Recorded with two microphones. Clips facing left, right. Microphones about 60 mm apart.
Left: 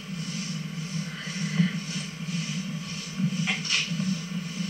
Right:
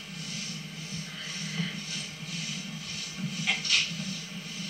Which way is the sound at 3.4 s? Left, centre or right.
Left.